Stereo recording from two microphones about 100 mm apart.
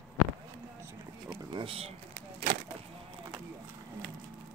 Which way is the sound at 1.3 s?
55° right (ahead or behind).